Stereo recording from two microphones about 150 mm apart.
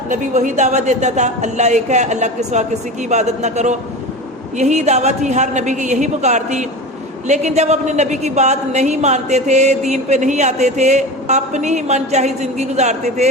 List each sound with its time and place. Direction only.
0.1 s a woman's voice: 55° right (ahead or behind)